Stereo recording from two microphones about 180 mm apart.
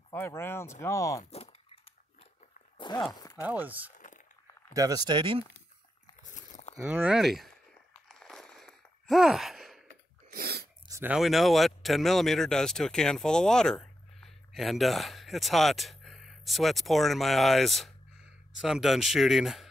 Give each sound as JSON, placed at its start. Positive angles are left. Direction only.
{"t": 0.1, "sound": "speech", "side_deg": 15}
{"t": 2.9, "sound": "horse", "side_deg": 25}
{"t": 3.2, "sound": "chopping", "side_deg": 20}
{"t": 3.4, "sound": "speech", "side_deg": -10}
{"t": 3.9, "sound": "a sound", "side_deg": 45}
{"t": 4.7, "sound": "speech", "side_deg": -20}
{"t": 6.8, "sound": "speech", "side_deg": -5}
{"t": 8.1, "sound": "sigh", "side_deg": 0}
{"t": 10.3, "sound": "sneeze", "side_deg": -60}
{"t": 10.9, "sound": "a sound", "side_deg": -15}
{"t": 11.1, "sound": "speech", "side_deg": 0}